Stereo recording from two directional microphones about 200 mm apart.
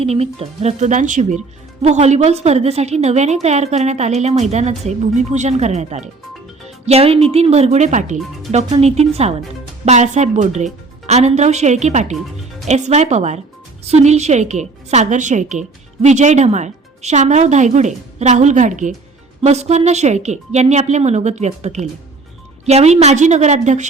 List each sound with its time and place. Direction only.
0.0 s speech: 30° right (ahead or behind)
12.1 s music: centre (ahead or behind)
12.6 s speech: 35° right (ahead or behind)